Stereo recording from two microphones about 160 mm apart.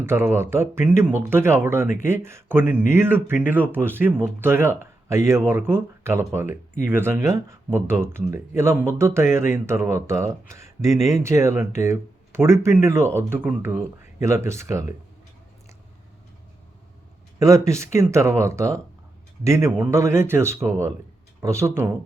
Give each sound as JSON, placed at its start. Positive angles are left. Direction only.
{"t": 0.0, "sound": "speech", "side_deg": -15}
{"t": 17.4, "sound": "speech", "side_deg": -20}